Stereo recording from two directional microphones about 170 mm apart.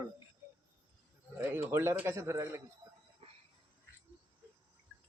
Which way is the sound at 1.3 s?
10° right (ahead or behind).